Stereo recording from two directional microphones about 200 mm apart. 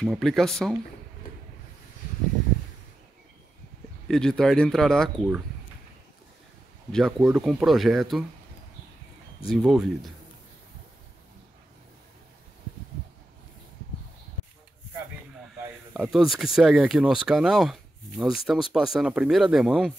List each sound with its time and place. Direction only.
0.0 s speech: centre (ahead or behind)
4.1 s speech: 5° left (ahead or behind)
6.9 s speech: centre (ahead or behind)
9.5 s speech: 5° right (ahead or behind)
15.9 s speech: 5° right (ahead or behind)